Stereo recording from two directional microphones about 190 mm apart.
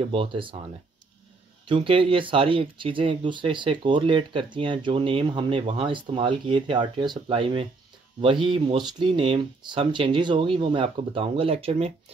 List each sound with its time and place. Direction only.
0.0 s speech: 30° right (ahead or behind)
1.7 s speech: 25° right (ahead or behind)